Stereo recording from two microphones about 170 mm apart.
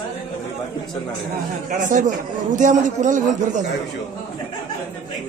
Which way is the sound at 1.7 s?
50° right (ahead or behind).